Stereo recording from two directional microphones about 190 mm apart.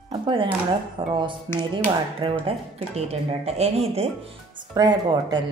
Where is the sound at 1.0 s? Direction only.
25° right (ahead or behind).